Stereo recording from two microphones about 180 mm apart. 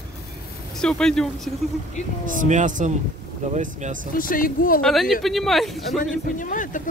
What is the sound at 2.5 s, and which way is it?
Speech, 45° right (ahead or behind).